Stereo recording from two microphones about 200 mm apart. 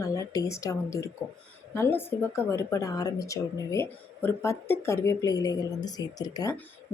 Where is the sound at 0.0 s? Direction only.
15° left (ahead or behind).